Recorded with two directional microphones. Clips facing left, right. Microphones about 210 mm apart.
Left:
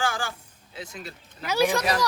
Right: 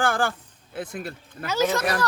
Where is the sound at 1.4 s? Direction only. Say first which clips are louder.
Even; 15° left (ahead or behind).